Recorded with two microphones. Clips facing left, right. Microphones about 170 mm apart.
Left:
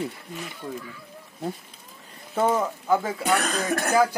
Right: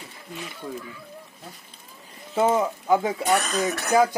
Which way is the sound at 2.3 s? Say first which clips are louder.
Right 2 dB; 10° right (ahead or behind).